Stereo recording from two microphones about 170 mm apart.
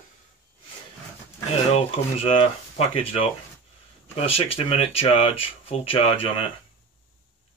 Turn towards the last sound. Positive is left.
turn(degrees=35)  # may be behind; listen again after turning